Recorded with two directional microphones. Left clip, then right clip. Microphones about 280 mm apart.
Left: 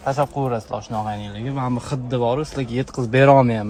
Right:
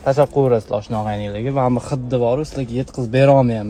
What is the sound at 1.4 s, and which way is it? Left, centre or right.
Speech, centre.